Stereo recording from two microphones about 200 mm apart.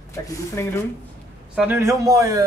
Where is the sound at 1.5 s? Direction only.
10° right (ahead or behind).